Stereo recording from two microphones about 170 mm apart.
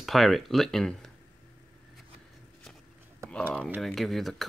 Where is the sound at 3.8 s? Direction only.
Centre (ahead or behind).